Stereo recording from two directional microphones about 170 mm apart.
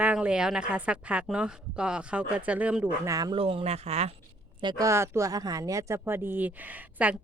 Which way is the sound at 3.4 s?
35° right (ahead or behind).